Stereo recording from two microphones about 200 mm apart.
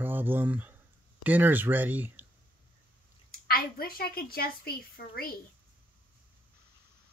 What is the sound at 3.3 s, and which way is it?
A child's voice, 45° left (ahead or behind).